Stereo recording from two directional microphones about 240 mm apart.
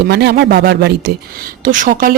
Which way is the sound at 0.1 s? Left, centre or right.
Right.